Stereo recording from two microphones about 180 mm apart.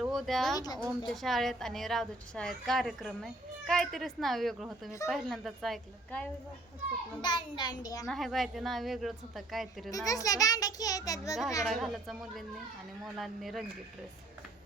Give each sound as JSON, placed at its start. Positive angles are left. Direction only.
{"t": 0.0, "sound": "speech", "side_deg": 0}
{"t": 0.5, "sound": "a child's voice", "side_deg": 20}
{"t": 0.8, "sound": "a woman's voice", "side_deg": 0}
{"t": 7.2, "sound": "a child's voice", "side_deg": 25}
{"t": 8.0, "sound": "a woman's voice", "side_deg": 0}
{"t": 9.9, "sound": "a child's voice", "side_deg": 20}
{"t": 11.6, "sound": "a woman's voice", "side_deg": 0}
{"t": 13.1, "sound": "a woman's voice", "side_deg": 0}